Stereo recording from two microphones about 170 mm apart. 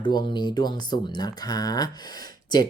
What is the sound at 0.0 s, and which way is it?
Speech, 30° left (ahead or behind).